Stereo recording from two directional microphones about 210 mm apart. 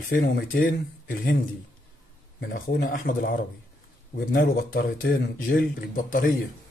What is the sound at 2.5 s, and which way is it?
Speech, 40° left (ahead or behind).